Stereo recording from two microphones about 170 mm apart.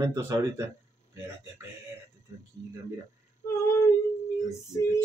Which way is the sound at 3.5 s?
15° left (ahead or behind).